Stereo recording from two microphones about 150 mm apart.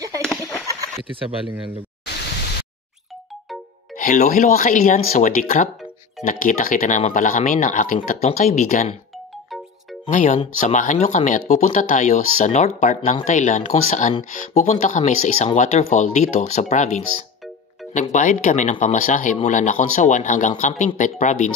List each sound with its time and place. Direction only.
0.2 s a sound: 5° left (ahead or behind)
4.0 s speech: 60° left (ahead or behind)
10.0 s speech: 60° left (ahead or behind)
18.1 s speech: 55° left (ahead or behind)